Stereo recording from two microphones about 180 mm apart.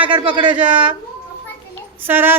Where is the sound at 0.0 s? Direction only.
30° right (ahead or behind).